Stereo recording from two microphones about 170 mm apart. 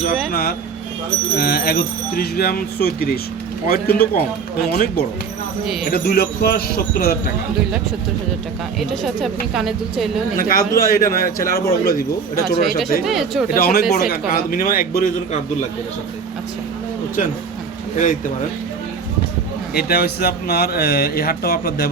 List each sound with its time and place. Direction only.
0.3 s speech: 65° left (ahead or behind)
8.8 s speech: centre (ahead or behind)
10.3 s speech: 55° left (ahead or behind)
13.1 s speech: centre (ahead or behind)
13.5 s speech: 60° left (ahead or behind)
17.9 s speech: 45° left (ahead or behind)
19.7 s speech: 70° left (ahead or behind)